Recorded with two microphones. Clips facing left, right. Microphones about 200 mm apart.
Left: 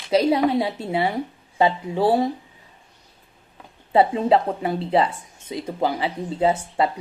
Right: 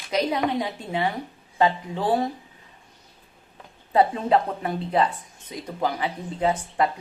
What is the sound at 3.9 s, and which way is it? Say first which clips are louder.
Speech: left 3 dB; 25° left (ahead or behind).